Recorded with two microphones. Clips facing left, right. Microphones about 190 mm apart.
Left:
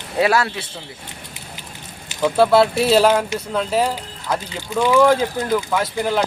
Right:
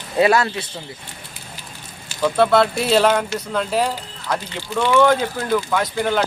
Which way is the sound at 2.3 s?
5° left (ahead or behind).